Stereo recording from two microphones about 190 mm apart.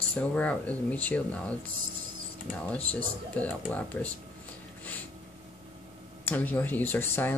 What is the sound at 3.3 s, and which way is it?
Speech, 5° left (ahead or behind).